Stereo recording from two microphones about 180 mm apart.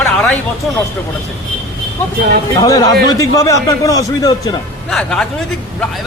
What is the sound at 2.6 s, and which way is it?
A man's voice, 20° left (ahead or behind).